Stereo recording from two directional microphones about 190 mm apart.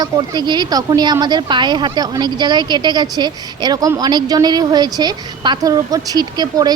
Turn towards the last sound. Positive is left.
turn(degrees=-20)  # may be behind; listen again after turning